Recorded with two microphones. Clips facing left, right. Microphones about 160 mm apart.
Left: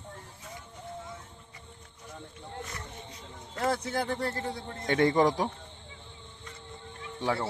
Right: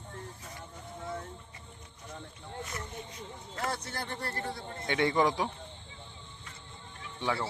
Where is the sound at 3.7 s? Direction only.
90° left.